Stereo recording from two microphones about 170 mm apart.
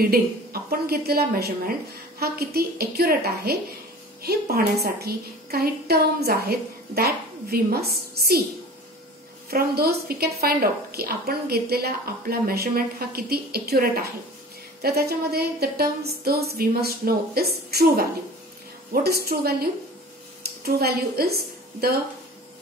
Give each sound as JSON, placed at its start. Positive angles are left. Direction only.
{"t": 0.0, "sound": "a woman's voice", "side_deg": -60}
{"t": 9.5, "sound": "a woman's voice", "side_deg": -65}
{"t": 19.0, "sound": "a woman's voice", "side_deg": -65}